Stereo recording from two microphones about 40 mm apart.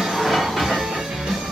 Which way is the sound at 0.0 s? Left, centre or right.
Centre.